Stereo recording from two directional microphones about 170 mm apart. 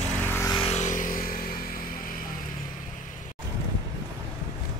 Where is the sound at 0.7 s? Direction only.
45° left (ahead or behind).